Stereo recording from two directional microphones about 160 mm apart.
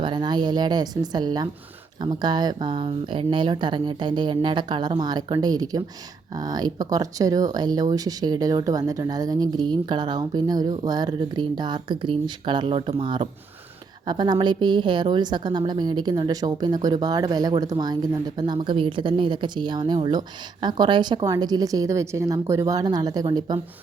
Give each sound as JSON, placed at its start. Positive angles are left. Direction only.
{"t": 0.0, "sound": "a woman's voice", "side_deg": -30}